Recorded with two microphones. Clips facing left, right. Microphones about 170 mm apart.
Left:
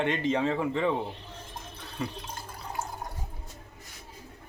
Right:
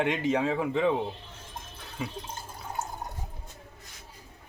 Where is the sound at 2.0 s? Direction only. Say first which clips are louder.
Left 1 dB; 5° right (ahead or behind).